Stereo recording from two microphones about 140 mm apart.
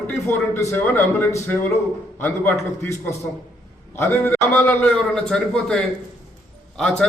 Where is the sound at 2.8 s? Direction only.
20° left (ahead or behind).